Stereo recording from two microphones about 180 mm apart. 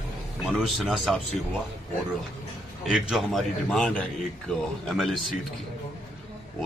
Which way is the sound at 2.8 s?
5° right (ahead or behind).